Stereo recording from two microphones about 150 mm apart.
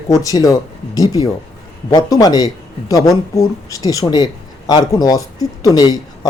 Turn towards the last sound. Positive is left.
turn(degrees=25)  # may be behind; listen again after turning